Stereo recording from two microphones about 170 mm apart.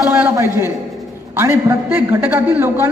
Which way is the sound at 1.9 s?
10° right (ahead or behind).